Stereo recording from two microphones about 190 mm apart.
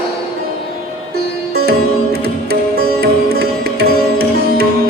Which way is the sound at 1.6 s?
55° right (ahead or behind).